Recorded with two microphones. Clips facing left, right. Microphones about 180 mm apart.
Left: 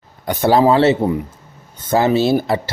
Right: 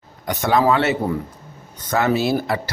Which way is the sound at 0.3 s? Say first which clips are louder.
Left 4 dB; 30° left (ahead or behind).